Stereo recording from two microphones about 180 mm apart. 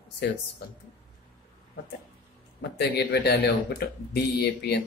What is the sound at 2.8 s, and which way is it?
Speech, 65° left (ahead or behind).